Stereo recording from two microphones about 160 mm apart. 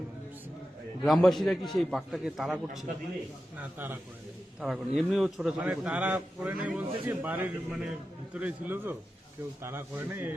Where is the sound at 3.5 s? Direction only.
10° right (ahead or behind).